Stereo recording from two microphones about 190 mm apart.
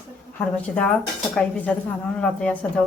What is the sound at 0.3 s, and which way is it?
A woman's voice, 5° left (ahead or behind).